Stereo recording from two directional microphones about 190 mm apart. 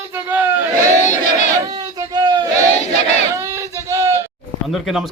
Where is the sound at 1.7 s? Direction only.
20° right (ahead or behind).